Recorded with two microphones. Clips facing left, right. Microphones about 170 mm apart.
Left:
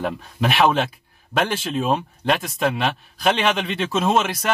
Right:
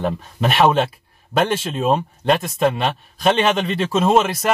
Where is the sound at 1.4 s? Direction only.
Centre (ahead or behind).